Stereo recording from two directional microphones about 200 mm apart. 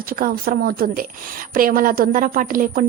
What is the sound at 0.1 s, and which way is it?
A woman's voice, 45° right (ahead or behind).